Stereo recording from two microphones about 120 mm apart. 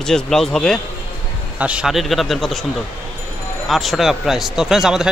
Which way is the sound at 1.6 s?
10° right (ahead or behind).